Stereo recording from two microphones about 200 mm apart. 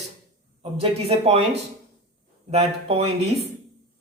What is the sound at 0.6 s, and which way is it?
Speech, 30° right (ahead or behind).